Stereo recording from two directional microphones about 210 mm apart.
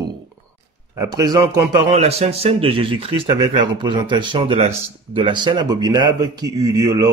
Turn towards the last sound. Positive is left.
turn(degrees=-15)  # may be behind; listen again after turning